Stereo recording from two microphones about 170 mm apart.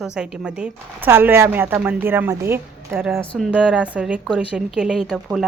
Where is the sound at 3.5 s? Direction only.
5° right (ahead or behind).